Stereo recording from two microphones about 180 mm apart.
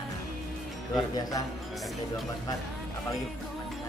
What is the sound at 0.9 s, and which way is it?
Speech, 20° left (ahead or behind).